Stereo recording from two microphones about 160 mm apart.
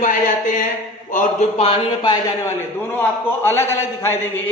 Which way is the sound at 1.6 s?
35° left (ahead or behind).